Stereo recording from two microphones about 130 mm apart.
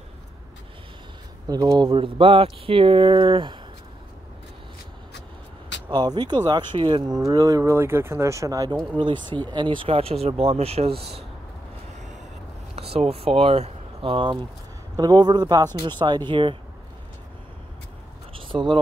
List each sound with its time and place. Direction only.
1.5 s speech: 30° right (ahead or behind)
1.9 s speech: 40° right (ahead or behind)
5.9 s speech: 35° right (ahead or behind)
7.2 s speech: 25° right (ahead or behind)
8.9 s speech: 40° right (ahead or behind)
12.7 s speech: 50° right (ahead or behind)
18.5 s speech: 35° right (ahead or behind)